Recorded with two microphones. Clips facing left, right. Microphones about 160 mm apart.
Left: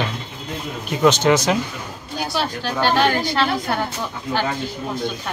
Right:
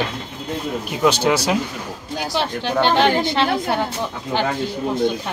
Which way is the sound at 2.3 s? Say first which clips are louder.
Right 3 dB; 20° right (ahead or behind).